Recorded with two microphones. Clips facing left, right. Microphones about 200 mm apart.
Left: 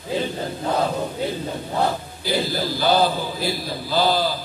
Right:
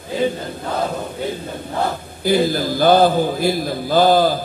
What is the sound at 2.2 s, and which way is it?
A man's voice, 50° right (ahead or behind).